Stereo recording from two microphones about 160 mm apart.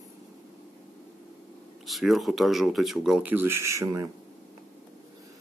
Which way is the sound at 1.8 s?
Centre (ahead or behind).